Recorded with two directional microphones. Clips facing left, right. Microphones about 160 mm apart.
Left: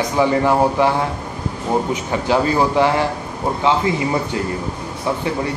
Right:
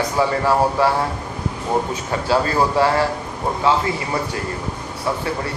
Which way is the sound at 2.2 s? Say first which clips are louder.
Left 1 dB; 20° left (ahead or behind).